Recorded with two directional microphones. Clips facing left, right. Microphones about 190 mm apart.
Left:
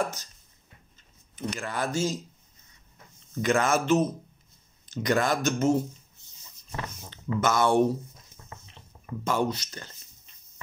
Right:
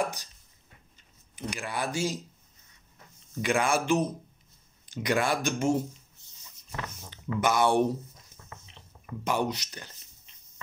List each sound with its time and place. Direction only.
0.0 s speech: 15° right (ahead or behind)
1.3 s speech: 15° right (ahead or behind)
3.3 s speech: 15° right (ahead or behind)
7.3 s speech: 15° right (ahead or behind)
8.5 s a sound: 30° left (ahead or behind)
9.2 s speech: 15° right (ahead or behind)